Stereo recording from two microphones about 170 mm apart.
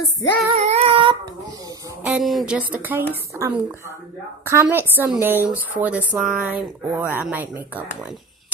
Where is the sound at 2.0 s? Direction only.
5° right (ahead or behind).